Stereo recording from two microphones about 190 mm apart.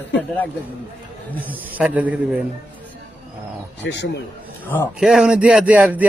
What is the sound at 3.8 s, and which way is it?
Speech, 65° left (ahead or behind).